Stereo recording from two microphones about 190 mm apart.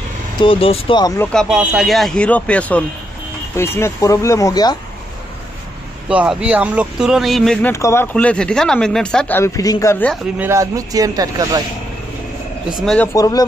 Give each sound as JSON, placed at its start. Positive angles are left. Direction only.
{"t": 0.4, "sound": "speech", "side_deg": 30}
{"t": 1.3, "sound": "speech", "side_deg": 0}
{"t": 6.0, "sound": "speech", "side_deg": -5}
{"t": 7.7, "sound": "speech", "side_deg": 15}
{"t": 10.4, "sound": "speech", "side_deg": -15}
{"t": 12.8, "sound": "speech", "side_deg": 5}
{"t": 13.1, "sound": "speech", "side_deg": 20}